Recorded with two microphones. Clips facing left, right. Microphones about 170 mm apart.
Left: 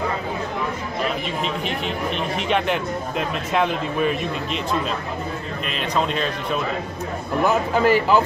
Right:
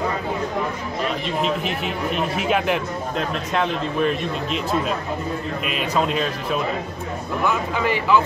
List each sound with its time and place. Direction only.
1.4 s speech: centre (ahead or behind)
7.4 s speech: 40° left (ahead or behind)